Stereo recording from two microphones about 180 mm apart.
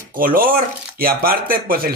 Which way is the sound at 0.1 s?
50° right (ahead or behind).